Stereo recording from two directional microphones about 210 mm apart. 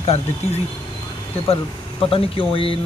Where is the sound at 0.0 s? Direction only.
30° left (ahead or behind).